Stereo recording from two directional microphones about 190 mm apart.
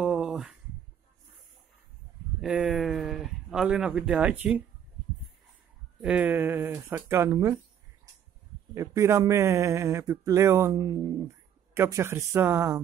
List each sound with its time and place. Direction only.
0.0 s a sound: 5° right (ahead or behind)
2.4 s speech: 5° right (ahead or behind)
5.9 s speech: 5° right (ahead or behind)
8.7 s speech: 15° right (ahead or behind)